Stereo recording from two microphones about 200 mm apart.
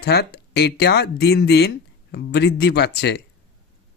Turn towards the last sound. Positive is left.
turn(degrees=55)  # may be behind; listen again after turning